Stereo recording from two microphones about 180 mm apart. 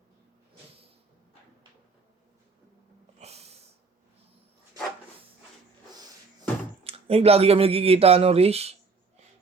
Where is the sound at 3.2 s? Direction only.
35° right (ahead or behind).